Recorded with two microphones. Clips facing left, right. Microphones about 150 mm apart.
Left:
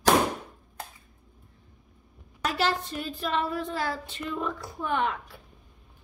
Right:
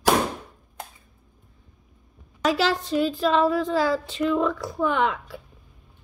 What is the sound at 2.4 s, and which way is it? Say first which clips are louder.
A woman's voice: right 5 dB; 90° right.